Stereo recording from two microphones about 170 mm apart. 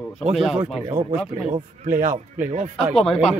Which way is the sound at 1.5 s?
55° right (ahead or behind).